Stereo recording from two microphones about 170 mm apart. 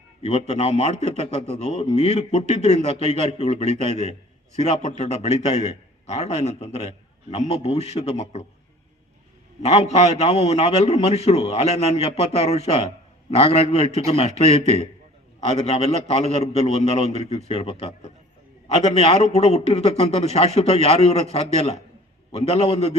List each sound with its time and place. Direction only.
0.2 s a man's voice: 40° left (ahead or behind)
9.6 s a man's voice: 40° left (ahead or behind)